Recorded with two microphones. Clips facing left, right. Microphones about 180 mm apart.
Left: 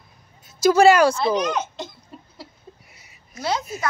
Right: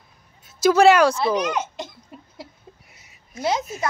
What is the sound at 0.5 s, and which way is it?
A child's voice, centre (ahead or behind).